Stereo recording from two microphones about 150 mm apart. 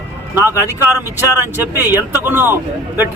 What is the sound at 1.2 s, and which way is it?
Speech, 15° right (ahead or behind).